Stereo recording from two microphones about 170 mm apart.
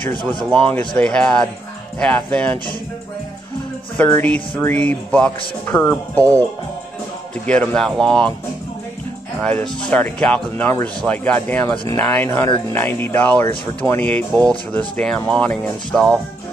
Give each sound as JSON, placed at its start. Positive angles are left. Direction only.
{"t": 0.2, "sound": "speech", "side_deg": -25}
{"t": 0.7, "sound": "speech", "side_deg": 5}
{"t": 4.0, "sound": "speech", "side_deg": 10}
{"t": 7.4, "sound": "speech", "side_deg": 5}
{"t": 9.4, "sound": "speech", "side_deg": 5}
{"t": 11.7, "sound": "speech", "side_deg": 25}
{"t": 12.0, "sound": "speech", "side_deg": 10}